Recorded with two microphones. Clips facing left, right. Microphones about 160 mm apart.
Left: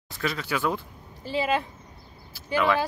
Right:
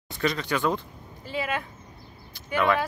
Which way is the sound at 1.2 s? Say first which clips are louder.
Left 4 dB; 30° left (ahead or behind).